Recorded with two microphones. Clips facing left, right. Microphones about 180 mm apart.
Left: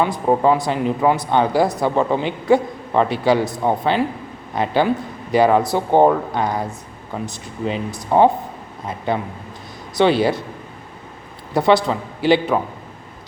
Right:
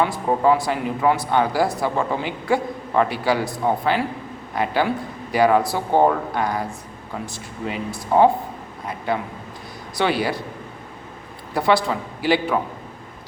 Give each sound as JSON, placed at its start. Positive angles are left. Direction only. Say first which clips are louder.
{"t": 0.0, "sound": "speech", "louder": "left 2 dB", "side_deg": 20}
{"t": 9.9, "sound": "speech", "louder": "left 6 dB", "side_deg": 25}
{"t": 11.5, "sound": "speech", "louder": "left 4 dB", "side_deg": 20}